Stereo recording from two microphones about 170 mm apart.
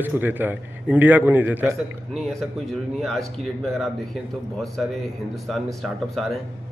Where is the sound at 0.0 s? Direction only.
10° right (ahead or behind).